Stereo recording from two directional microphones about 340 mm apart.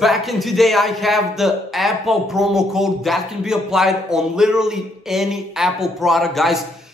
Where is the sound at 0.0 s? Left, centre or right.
Centre.